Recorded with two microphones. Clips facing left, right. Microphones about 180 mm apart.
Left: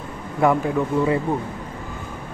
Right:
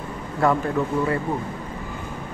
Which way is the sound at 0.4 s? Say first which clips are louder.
Left 2 dB; 15° left (ahead or behind).